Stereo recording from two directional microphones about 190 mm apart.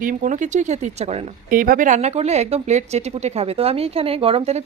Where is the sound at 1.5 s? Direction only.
45° right (ahead or behind).